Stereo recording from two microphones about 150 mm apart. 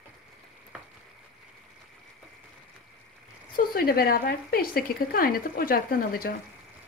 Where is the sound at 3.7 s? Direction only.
85° left.